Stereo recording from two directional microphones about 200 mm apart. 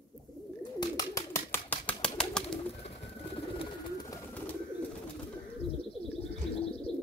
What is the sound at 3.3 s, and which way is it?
Bird, 25° left (ahead or behind).